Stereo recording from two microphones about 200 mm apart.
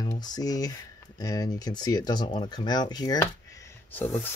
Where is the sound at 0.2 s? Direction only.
20° left (ahead or behind).